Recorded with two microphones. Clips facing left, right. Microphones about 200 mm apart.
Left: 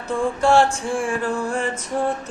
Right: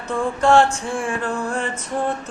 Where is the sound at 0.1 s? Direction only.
10° left (ahead or behind).